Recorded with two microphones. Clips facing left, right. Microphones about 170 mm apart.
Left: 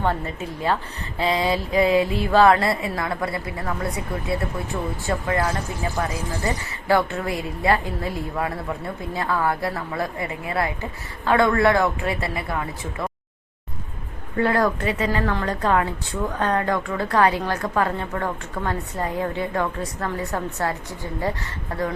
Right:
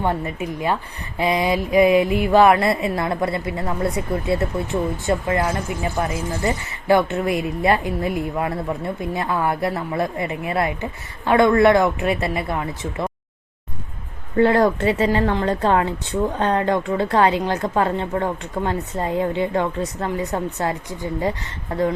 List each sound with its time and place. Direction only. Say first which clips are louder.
0.0 s a woman's voice: right 2 dB; 15° right (ahead or behind)
14.3 s a woman's voice: right 5 dB; 25° right (ahead or behind)